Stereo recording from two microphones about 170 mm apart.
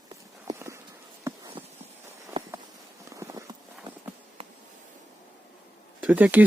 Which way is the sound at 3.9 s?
30° right (ahead or behind).